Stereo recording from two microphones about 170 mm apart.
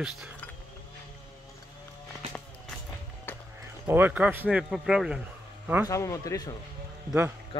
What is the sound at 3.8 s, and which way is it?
A man's voice, 10° right (ahead or behind).